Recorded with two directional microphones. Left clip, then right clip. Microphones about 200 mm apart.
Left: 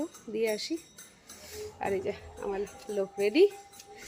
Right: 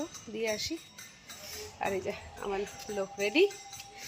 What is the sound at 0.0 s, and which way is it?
Speech, centre (ahead or behind).